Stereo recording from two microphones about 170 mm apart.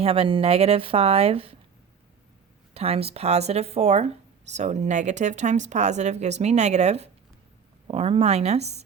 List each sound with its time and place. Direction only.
0.0 s speech: 35° right (ahead or behind)
2.7 s speech: 35° right (ahead or behind)